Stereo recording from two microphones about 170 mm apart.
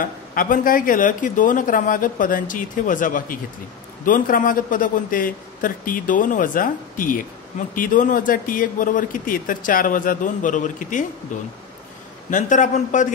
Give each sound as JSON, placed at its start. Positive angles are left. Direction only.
{"t": 0.0, "sound": "speech", "side_deg": 55}